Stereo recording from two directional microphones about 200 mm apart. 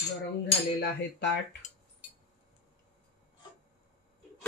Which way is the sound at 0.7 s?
55° left (ahead or behind).